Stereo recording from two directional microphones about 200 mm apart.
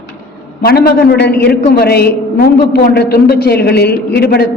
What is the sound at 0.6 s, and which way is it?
A man's voice, 50° left (ahead or behind).